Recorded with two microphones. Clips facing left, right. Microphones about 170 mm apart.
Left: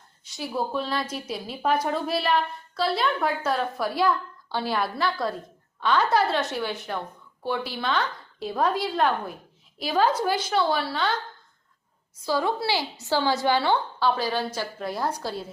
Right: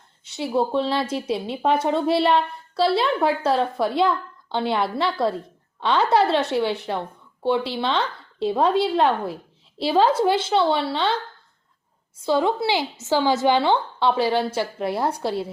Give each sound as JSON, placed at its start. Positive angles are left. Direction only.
{"t": 0.3, "sound": "speech", "side_deg": -25}
{"t": 12.2, "sound": "speech", "side_deg": -20}